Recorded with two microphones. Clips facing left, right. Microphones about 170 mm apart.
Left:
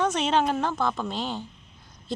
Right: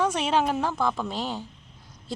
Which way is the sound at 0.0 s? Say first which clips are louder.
Even; 10° right (ahead or behind).